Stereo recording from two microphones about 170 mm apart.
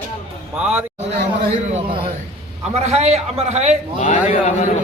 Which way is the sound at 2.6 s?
40° right (ahead or behind).